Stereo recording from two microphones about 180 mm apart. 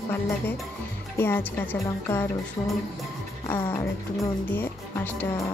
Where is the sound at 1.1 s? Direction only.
10° left (ahead or behind).